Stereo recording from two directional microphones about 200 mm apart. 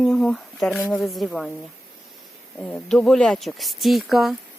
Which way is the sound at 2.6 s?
5° left (ahead or behind).